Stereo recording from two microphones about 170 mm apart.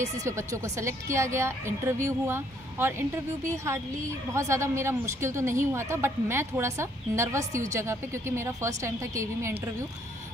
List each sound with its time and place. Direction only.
0.0 s a woman's voice: 15° right (ahead or behind)
4.3 s a woman's voice: 15° right (ahead or behind)